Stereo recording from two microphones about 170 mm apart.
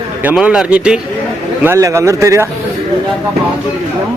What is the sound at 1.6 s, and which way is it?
Speech, 15° right (ahead or behind).